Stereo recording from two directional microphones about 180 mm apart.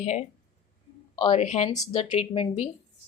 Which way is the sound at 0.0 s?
40° left (ahead or behind).